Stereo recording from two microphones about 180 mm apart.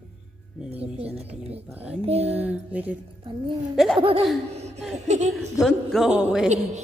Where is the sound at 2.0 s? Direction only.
35° right (ahead or behind).